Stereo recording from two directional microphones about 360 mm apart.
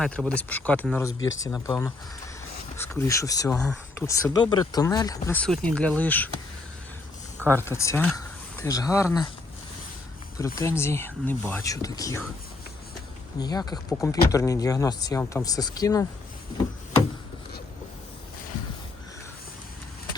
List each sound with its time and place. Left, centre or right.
0.0 s speech: centre
1.2 s speech: left
1.5 s speech: centre
7.5 s speech: centre
10.6 s speech: centre
13.4 s speech: centre